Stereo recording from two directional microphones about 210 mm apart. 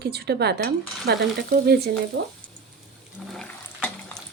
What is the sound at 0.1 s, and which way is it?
Speech, 50° right (ahead or behind).